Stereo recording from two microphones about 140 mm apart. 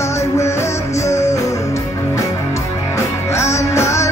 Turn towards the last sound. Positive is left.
turn(degrees=20)  # may be behind; listen again after turning